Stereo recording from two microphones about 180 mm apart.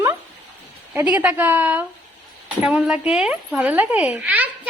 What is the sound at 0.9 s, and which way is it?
A woman's voice, 10° right (ahead or behind).